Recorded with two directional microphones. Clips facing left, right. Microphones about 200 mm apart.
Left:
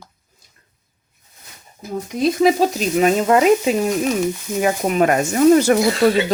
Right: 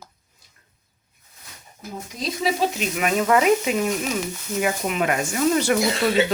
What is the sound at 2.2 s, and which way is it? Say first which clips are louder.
Speech: left 9 dB; 50° left (ahead or behind).